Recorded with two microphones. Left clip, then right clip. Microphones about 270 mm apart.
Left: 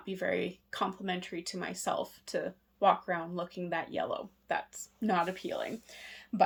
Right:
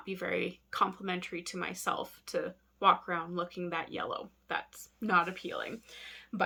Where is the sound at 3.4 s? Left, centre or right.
Centre.